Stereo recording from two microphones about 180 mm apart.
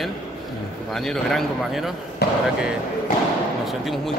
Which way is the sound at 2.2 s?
65° left (ahead or behind).